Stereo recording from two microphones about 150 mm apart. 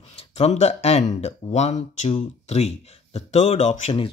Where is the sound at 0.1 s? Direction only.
45° left (ahead or behind).